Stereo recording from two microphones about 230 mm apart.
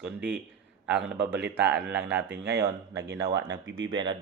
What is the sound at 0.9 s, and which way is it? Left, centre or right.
Speech, centre.